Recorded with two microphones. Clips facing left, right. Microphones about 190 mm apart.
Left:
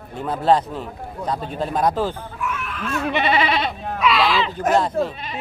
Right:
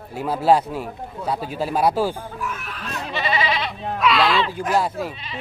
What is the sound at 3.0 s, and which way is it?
Goat, 60° left (ahead or behind).